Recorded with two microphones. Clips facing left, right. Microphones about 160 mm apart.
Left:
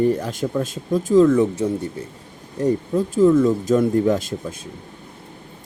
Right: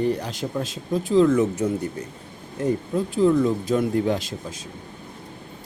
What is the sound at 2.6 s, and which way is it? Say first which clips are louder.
Speech: left 4 dB; 40° left (ahead or behind).